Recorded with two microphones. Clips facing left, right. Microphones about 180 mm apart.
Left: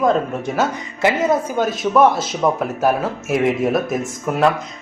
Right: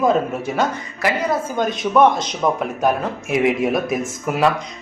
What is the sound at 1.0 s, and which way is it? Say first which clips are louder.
Speech: left 4 dB; 20° left (ahead or behind).